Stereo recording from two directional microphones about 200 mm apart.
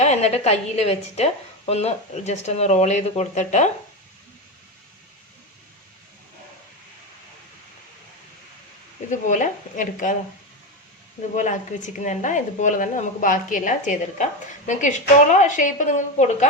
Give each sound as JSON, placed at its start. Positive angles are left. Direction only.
{"t": 0.0, "sound": "a woman's voice", "side_deg": 35}
{"t": 9.0, "sound": "a woman's voice", "side_deg": 40}
{"t": 11.3, "sound": "a woman's voice", "side_deg": 40}